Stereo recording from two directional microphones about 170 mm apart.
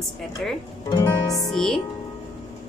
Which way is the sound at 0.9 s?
25° left (ahead or behind).